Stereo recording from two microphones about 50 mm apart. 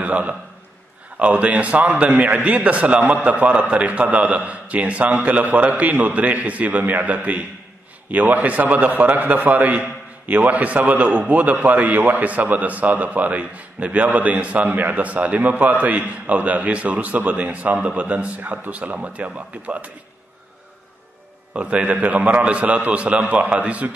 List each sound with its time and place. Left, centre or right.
0.0 s a man's voice: right
21.5 s a man's voice: right